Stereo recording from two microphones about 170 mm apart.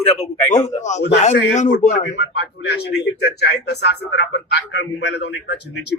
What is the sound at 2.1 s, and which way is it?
Speech, 85° left.